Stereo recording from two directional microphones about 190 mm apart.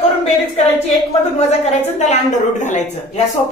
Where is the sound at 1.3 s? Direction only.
35° left (ahead or behind).